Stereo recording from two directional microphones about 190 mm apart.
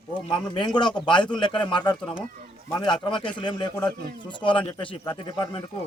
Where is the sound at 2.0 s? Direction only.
5° left (ahead or behind).